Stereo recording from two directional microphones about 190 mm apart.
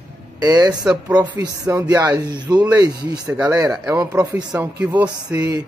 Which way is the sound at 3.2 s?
10° right (ahead or behind).